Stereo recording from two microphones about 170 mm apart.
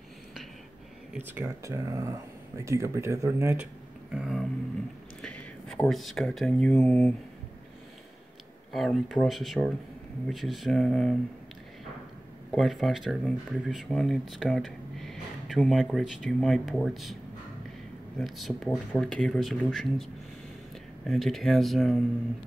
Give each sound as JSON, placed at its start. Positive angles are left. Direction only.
{"t": 1.1, "sound": "speech", "side_deg": -10}
{"t": 4.1, "sound": "speech", "side_deg": 0}
{"t": 8.7, "sound": "speech", "side_deg": 0}
{"t": 12.5, "sound": "speech", "side_deg": 0}
{"t": 18.2, "sound": "speech", "side_deg": 0}
{"t": 21.1, "sound": "speech", "side_deg": 0}